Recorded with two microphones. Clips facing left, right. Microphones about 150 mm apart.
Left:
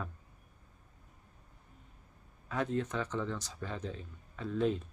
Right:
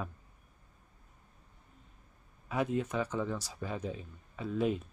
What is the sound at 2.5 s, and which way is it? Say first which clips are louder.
Speech: right 2 dB; 10° right (ahead or behind).